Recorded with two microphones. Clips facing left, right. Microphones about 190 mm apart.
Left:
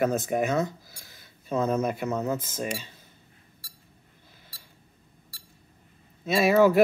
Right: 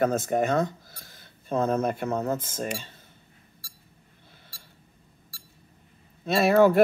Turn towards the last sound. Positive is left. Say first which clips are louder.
# right 1 dB
turn(degrees=5)  # may be behind; listen again after turning